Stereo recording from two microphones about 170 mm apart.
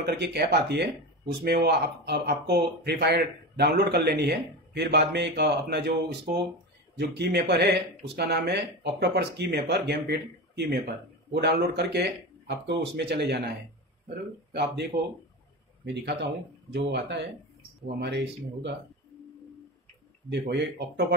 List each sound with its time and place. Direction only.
0.0 s speech: 70° right (ahead or behind)
7.0 s speech: 80° right
20.2 s speech: 90° right; by 21.1 s 75° right (ahead or behind)